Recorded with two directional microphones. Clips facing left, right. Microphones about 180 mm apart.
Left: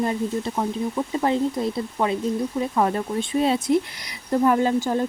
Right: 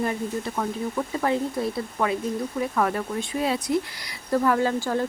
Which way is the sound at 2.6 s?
25° left (ahead or behind).